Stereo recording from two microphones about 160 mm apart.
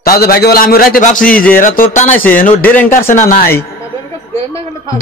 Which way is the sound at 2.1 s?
10° left (ahead or behind).